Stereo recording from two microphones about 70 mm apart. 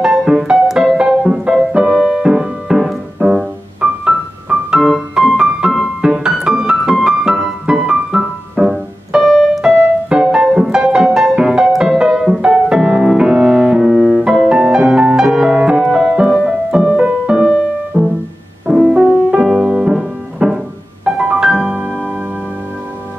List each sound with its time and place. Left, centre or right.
0.0 s music: centre
9.8 s music: centre
17.9 s music: centre
18.7 s music: centre